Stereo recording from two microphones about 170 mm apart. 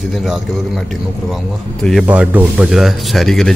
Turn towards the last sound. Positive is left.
turn(degrees=0)  # may be behind; listen again after turning